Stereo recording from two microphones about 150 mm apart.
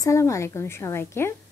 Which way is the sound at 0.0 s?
20° left (ahead or behind).